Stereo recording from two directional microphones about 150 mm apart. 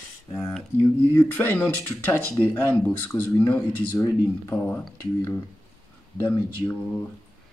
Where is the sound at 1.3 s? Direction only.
10° left (ahead or behind).